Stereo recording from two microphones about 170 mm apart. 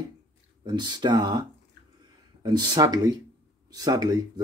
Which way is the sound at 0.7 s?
25° right (ahead or behind).